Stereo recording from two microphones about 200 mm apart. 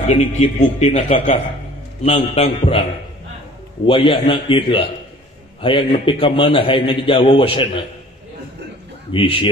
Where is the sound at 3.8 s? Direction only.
25° left (ahead or behind).